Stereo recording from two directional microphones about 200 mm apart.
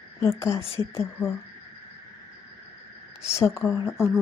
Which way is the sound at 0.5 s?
30° left (ahead or behind).